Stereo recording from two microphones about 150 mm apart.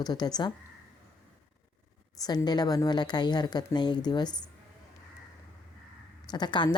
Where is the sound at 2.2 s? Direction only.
25° left (ahead or behind).